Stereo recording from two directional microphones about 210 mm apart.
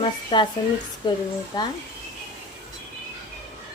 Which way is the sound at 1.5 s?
20° left (ahead or behind).